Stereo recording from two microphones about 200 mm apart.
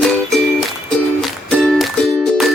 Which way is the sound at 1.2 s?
5° left (ahead or behind).